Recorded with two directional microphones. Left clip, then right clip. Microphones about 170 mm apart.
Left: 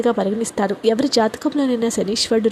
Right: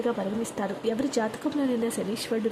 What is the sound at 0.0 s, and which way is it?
Speech, 35° left (ahead or behind).